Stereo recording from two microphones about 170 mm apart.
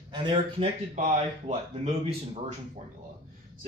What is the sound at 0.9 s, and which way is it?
Speech, 40° right (ahead or behind).